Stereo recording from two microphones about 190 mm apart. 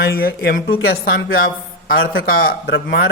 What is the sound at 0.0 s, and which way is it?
Speech, 50° left (ahead or behind).